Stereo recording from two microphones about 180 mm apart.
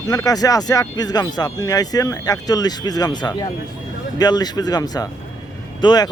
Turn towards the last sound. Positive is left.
turn(degrees=25)  # may be behind; listen again after turning